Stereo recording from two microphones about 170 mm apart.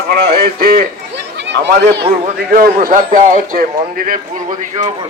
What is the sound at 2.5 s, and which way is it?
A man's voice, 60° right (ahead or behind).